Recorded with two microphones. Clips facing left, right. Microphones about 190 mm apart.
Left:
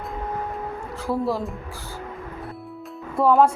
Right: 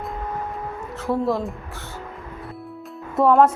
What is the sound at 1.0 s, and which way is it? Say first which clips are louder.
Speech: right 2 dB; centre (ahead or behind).